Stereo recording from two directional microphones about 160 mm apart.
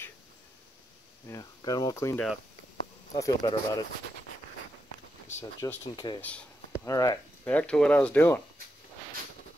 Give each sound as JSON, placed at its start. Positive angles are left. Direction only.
{"t": 1.3, "sound": "speech", "side_deg": 25}
{"t": 5.6, "sound": "speech", "side_deg": 20}
{"t": 6.2, "sound": "speech", "side_deg": 10}
{"t": 7.4, "sound": "speech", "side_deg": 5}